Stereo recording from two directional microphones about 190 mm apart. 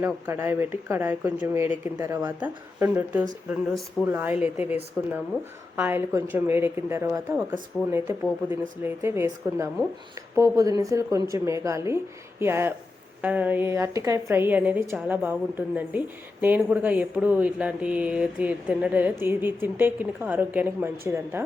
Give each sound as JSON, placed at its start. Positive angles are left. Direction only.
{"t": 0.0, "sound": "a woman's voice", "side_deg": -10}